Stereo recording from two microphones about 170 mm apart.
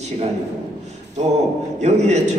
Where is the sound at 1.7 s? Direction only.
40° right (ahead or behind).